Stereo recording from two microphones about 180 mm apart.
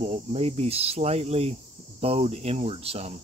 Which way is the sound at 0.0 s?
35° right (ahead or behind).